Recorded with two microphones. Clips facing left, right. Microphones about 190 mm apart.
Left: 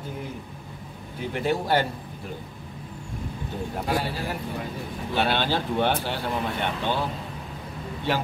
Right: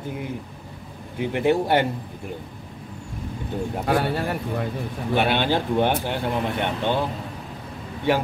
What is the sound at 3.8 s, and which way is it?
Speech, 60° right (ahead or behind).